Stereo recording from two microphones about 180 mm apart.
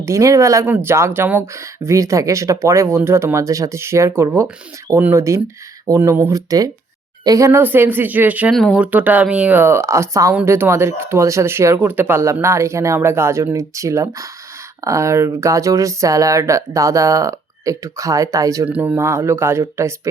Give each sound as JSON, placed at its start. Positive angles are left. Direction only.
{"t": 0.0, "sound": "speech", "side_deg": -15}